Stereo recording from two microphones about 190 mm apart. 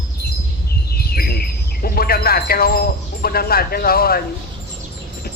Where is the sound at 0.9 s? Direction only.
55° left (ahead or behind).